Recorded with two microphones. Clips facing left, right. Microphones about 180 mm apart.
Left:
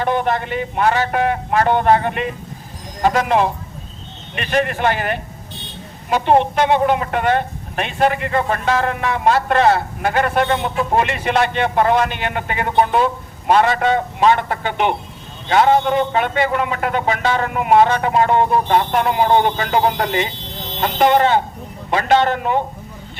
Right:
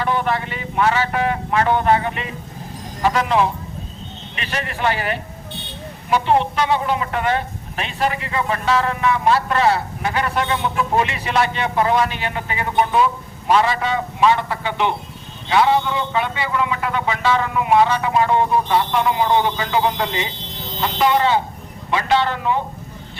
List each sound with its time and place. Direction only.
0.0 s a woman's voice: 50° left (ahead or behind)